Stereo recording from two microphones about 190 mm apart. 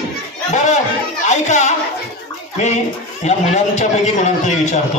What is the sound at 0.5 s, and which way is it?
Chatter, 40° left (ahead or behind).